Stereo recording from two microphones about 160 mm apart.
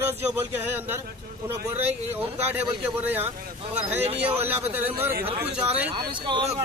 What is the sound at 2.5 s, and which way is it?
Speech, 10° right (ahead or behind).